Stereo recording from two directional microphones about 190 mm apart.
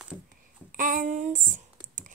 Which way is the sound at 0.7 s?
45° right (ahead or behind).